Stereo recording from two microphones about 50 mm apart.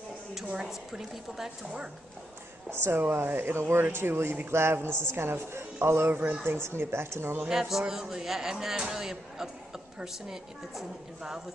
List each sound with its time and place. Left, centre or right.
0.7 s a man's voice: centre
2.7 s a man's voice: right
7.4 s a man's voice: centre